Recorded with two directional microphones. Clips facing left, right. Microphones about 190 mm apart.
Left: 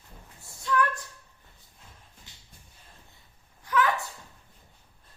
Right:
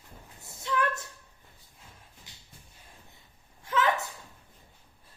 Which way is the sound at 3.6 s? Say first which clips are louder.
Left 1 dB; 25° right (ahead or behind).